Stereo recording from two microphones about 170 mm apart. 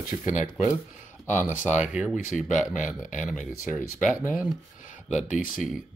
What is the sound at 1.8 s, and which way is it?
Speech, 10° right (ahead or behind).